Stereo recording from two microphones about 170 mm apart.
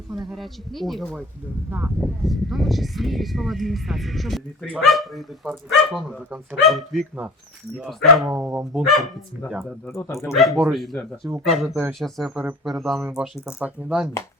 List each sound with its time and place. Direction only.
0.2 s speech: centre (ahead or behind)
9.8 s speech: 15° left (ahead or behind)
10.3 s speech: centre (ahead or behind)
11.7 s speech: 15° right (ahead or behind)
11.9 s speech: centre (ahead or behind)
13.0 s speech: 15° right (ahead or behind)